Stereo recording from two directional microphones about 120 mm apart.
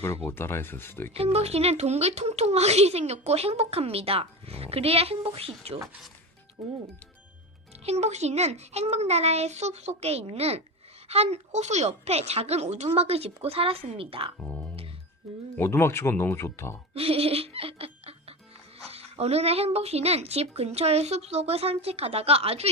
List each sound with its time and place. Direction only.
0.0 s speech: 20° left (ahead or behind)
1.1 s a woman's voice: 55° right (ahead or behind)
7.9 s a woman's voice: 65° right (ahead or behind); by 14.3 s 50° right (ahead or behind)
14.3 s speech: 15° left (ahead or behind)
16.9 s a woman's voice: 55° right (ahead or behind)